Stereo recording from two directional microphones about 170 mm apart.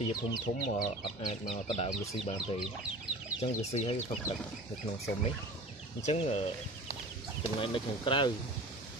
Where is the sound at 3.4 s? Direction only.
40° left (ahead or behind).